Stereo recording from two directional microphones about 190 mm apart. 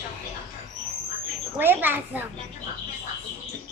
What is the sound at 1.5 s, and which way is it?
Speech, 10° right (ahead or behind).